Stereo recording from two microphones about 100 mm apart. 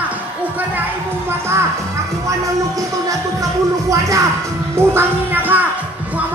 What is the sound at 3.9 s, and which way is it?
Music, 30° right (ahead or behind).